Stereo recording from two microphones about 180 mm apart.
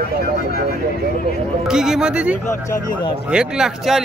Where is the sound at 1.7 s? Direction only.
5° right (ahead or behind).